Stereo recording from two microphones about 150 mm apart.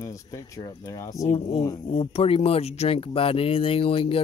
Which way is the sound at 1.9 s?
40° left (ahead or behind).